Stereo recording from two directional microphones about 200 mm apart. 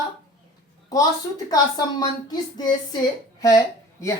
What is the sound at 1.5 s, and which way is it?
Speech, 20° left (ahead or behind).